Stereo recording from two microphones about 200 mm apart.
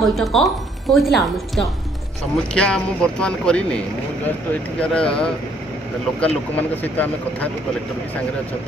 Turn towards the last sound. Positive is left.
turn(degrees=10)  # may be behind; listen again after turning